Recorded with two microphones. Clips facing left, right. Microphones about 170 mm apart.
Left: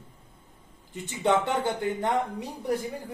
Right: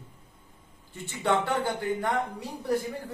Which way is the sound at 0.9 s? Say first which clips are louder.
Left 2 dB; 20° left (ahead or behind).